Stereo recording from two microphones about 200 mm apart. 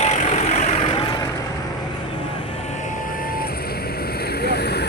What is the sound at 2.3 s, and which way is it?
Vehicle, 25° left (ahead or behind).